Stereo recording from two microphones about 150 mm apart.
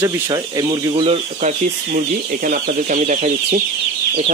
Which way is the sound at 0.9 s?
40° right (ahead or behind).